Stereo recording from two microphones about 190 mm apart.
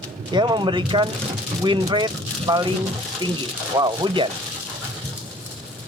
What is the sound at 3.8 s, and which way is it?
Speech, 25° right (ahead or behind).